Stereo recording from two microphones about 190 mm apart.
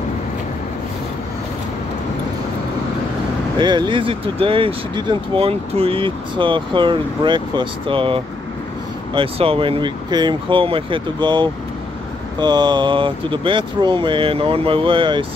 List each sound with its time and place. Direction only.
3.5 s speech: 25° right (ahead or behind)